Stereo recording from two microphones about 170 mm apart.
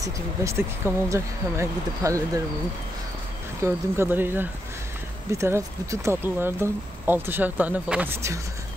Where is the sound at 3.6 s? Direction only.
15° right (ahead or behind).